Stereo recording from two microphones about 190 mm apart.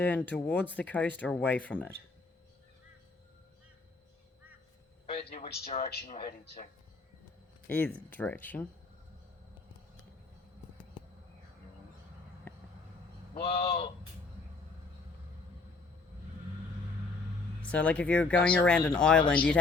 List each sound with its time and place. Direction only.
0.0 s speech: 10° left (ahead or behind)
5.3 s a man's voice: 35° left (ahead or behind)
6.2 s speech: 50° left (ahead or behind)
7.7 s speech: 10° left (ahead or behind)
12.5 s a sound: 10° left (ahead or behind)
13.4 s a man's voice: 30° left (ahead or behind)
17.6 s speech: 5° left (ahead or behind)